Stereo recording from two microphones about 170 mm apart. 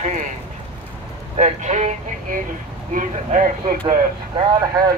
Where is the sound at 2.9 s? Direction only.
50° right (ahead or behind).